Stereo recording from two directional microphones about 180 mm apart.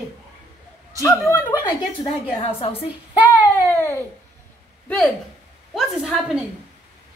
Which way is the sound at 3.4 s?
15° left (ahead or behind).